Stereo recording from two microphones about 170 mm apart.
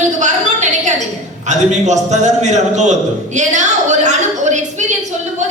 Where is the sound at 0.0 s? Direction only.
45° right (ahead or behind).